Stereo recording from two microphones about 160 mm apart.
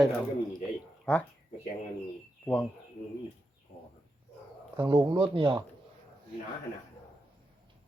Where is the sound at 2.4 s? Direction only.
10° left (ahead or behind).